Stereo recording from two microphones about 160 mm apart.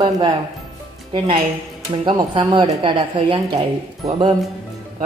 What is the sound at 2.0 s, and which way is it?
Speech, 30° right (ahead or behind).